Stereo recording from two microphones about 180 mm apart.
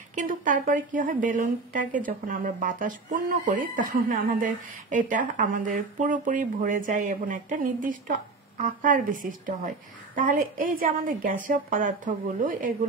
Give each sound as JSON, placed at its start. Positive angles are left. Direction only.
{"t": 0.1, "sound": "a woman's voice", "side_deg": -45}